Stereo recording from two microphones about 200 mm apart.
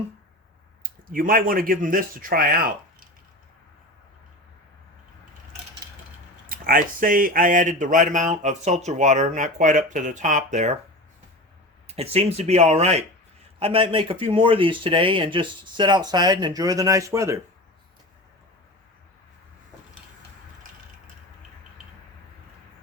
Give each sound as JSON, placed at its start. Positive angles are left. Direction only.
{"t": 0.8, "sound": "speech", "side_deg": -45}
{"t": 6.5, "sound": "speech", "side_deg": -45}
{"t": 11.9, "sound": "speech", "side_deg": -30}